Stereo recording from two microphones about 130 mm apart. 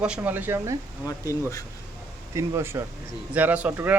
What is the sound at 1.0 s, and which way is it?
Speech, 25° left (ahead or behind).